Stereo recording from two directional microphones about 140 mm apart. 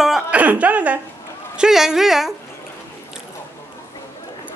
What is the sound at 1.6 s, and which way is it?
Speech, 5° right (ahead or behind).